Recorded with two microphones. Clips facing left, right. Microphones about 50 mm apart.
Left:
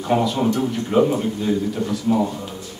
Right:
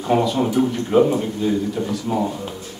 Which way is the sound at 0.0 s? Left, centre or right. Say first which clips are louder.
Right 1 dB; centre.